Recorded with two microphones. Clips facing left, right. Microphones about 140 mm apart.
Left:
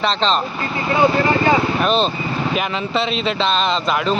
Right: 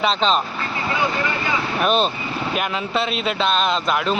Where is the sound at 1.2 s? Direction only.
40° left (ahead or behind).